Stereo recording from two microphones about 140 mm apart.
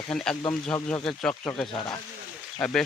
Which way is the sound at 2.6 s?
5° left (ahead or behind).